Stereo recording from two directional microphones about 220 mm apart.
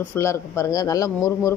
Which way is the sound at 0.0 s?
10° left (ahead or behind).